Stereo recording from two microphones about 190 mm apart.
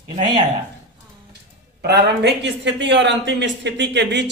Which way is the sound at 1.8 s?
60° right (ahead or behind).